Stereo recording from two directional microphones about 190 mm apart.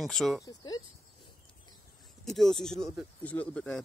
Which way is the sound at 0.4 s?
20° left (ahead or behind).